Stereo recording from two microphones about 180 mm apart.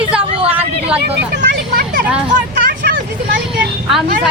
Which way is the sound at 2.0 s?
5° right (ahead or behind).